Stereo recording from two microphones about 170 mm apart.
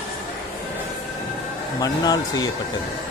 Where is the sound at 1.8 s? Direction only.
25° left (ahead or behind).